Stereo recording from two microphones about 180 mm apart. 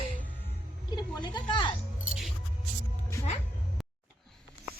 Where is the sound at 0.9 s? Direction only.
25° left (ahead or behind).